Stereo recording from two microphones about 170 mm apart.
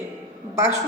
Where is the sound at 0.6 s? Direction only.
15° right (ahead or behind).